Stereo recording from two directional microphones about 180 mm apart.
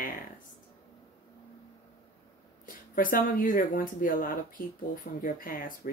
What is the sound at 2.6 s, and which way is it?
Speech, 50° left (ahead or behind).